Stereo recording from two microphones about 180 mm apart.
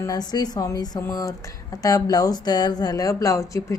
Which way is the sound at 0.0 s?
20° left (ahead or behind).